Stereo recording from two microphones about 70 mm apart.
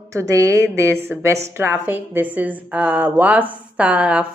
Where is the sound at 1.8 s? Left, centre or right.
Right.